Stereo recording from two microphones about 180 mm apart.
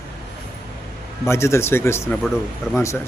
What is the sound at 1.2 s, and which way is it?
Speech, 15° left (ahead or behind).